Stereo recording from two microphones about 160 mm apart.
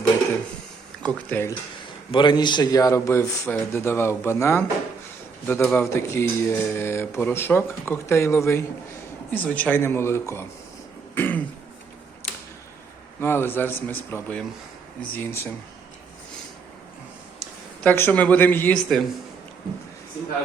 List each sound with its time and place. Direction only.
1.0 s speech: 15° left (ahead or behind)
2.1 s a man's voice: 30° left (ahead or behind)
11.1 s throat clearing: 10° left (ahead or behind)
13.1 s speech: 15° left (ahead or behind)
17.8 s speech: 10° left (ahead or behind)